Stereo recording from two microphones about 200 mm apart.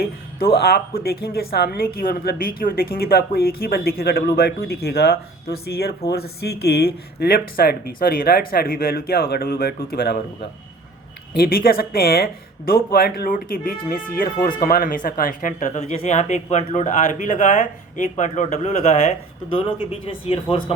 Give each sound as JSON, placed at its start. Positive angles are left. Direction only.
{"t": 0.0, "sound": "a woman's voice", "side_deg": 50}
{"t": 11.3, "sound": "speech", "side_deg": 45}